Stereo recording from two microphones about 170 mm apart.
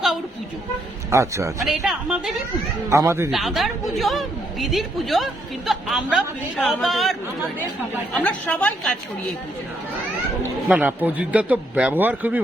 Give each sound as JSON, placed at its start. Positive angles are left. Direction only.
{"t": 1.1, "sound": "a man's voice", "side_deg": -15}
{"t": 1.6, "sound": "a woman's voice", "side_deg": 0}
{"t": 2.9, "sound": "a man's voice", "side_deg": -15}
{"t": 3.3, "sound": "a man's voice", "side_deg": 0}
{"t": 10.4, "sound": "a man's voice", "side_deg": -10}